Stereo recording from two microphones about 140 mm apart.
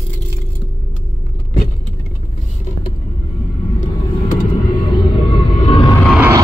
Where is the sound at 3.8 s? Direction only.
65° left (ahead or behind).